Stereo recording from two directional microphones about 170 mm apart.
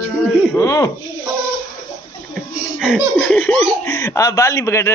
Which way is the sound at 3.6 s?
15° left (ahead or behind).